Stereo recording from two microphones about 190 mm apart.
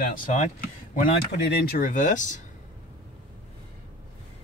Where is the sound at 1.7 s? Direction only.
45° left (ahead or behind).